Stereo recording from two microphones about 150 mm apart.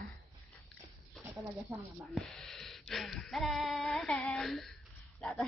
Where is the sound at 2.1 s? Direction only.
Centre (ahead or behind).